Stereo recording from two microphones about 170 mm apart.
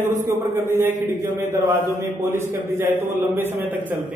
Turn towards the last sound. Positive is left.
turn(degrees=-10)  # may be behind; listen again after turning